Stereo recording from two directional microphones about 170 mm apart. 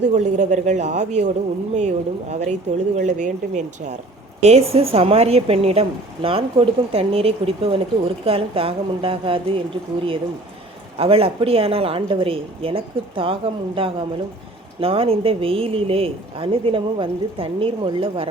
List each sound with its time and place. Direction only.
0.1 s speech: 45° right (ahead or behind)
2.3 s speech: 40° right (ahead or behind)
10.9 s speech: 35° right (ahead or behind)